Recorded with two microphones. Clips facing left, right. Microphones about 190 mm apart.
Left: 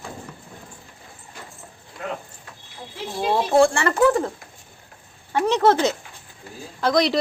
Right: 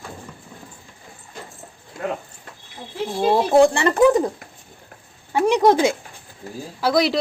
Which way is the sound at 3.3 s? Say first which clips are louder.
Right 2 dB; 15° right (ahead or behind).